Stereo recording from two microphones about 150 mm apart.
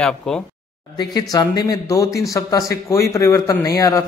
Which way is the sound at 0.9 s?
25° left (ahead or behind).